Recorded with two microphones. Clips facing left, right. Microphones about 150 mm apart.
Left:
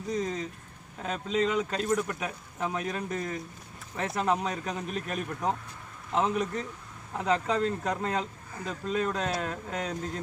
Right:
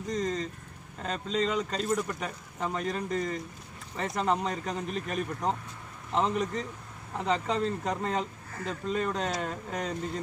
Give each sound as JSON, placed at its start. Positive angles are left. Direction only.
{"t": 0.1, "sound": "speech", "side_deg": 5}